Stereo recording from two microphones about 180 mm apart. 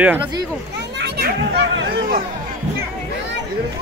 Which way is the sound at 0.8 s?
70° right (ahead or behind).